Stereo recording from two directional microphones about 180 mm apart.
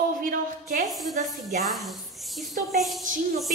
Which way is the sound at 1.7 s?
Centre (ahead or behind).